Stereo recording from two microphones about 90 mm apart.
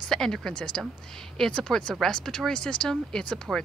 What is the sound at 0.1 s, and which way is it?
Speech, 5° left (ahead or behind).